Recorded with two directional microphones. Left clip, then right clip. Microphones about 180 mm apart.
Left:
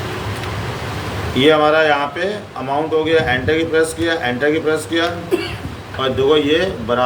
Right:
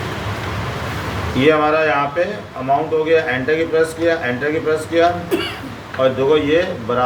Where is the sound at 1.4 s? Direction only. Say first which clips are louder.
Left 2 dB; 70° left (ahead or behind).